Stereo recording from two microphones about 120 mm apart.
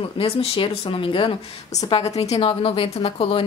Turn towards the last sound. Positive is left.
turn(degrees=50)  # may be behind; listen again after turning